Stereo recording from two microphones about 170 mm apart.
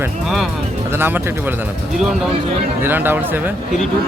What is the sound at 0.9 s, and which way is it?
Speech, 15° right (ahead or behind).